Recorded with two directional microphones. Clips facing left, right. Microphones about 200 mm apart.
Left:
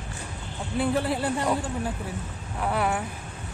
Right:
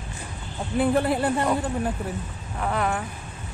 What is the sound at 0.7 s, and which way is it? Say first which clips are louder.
Speech: right 4 dB; 55° right (ahead or behind).